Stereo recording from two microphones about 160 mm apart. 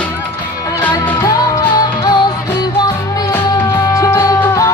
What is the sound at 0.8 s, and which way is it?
Music, 10° left (ahead or behind).